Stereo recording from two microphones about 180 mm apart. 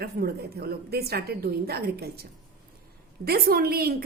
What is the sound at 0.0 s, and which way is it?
A woman's voice, 60° right (ahead or behind).